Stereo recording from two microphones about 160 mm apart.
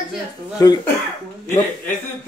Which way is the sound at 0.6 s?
20° left (ahead or behind).